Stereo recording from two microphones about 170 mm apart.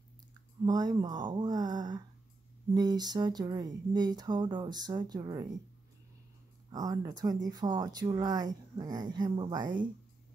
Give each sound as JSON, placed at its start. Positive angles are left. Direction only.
{"t": 0.7, "sound": "speech", "side_deg": -25}
{"t": 6.7, "sound": "speech", "side_deg": -20}